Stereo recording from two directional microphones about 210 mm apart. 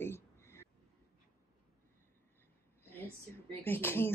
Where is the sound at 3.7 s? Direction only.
10° left (ahead or behind).